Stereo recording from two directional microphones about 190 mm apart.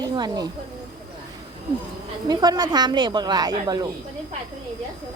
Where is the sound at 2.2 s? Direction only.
20° right (ahead or behind).